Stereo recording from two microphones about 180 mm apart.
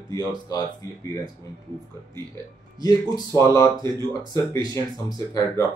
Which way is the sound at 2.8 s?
20° left (ahead or behind).